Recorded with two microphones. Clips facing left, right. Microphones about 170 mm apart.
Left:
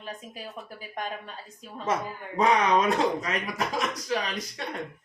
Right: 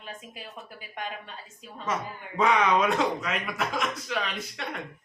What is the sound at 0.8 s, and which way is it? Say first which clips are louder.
Speech: left 2 dB; 40° left (ahead or behind).